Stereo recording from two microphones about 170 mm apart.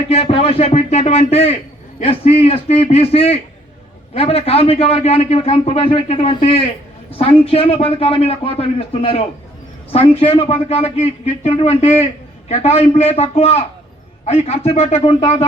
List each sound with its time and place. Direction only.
0.1 s a man's voice: 35° left (ahead or behind)